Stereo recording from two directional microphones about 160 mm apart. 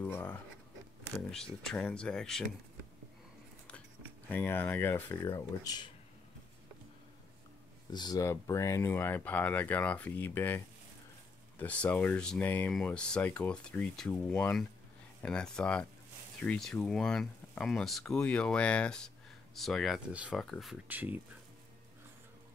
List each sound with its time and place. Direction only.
0.0 s speech: 15° left (ahead or behind)
1.3 s speech: 5° left (ahead or behind)
4.3 s speech: 10° left (ahead or behind)
5.3 s speech: 25° left (ahead or behind)
7.9 s speech: 25° left (ahead or behind); by 20.7 s centre (ahead or behind)
20.9 s speech: 10° right (ahead or behind)